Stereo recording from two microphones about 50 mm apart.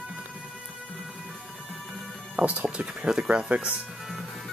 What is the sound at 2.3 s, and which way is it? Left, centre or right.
Speech, right.